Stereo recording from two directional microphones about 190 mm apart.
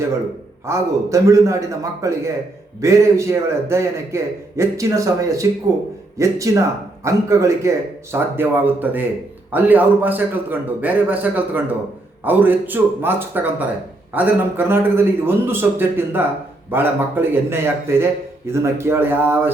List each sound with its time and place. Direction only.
0.7 s a man's voice: 15° right (ahead or behind)